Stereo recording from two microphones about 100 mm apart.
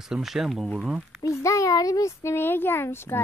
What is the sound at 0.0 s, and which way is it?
Speech, 5° right (ahead or behind).